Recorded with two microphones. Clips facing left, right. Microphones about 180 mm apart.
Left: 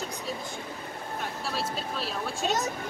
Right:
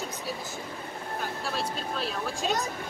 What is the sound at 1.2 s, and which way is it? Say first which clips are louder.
Speech: right 1 dB; centre (ahead or behind).